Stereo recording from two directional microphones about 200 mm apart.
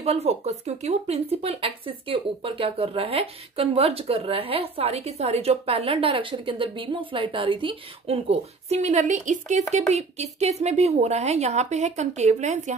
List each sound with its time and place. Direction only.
0.0 s speech: 30° right (ahead or behind)